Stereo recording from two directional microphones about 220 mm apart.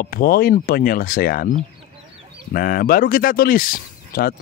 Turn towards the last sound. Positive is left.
turn(degrees=40)  # may be behind; listen again after turning